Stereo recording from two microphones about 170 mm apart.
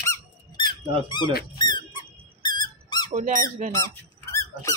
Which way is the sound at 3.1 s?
50° right (ahead or behind).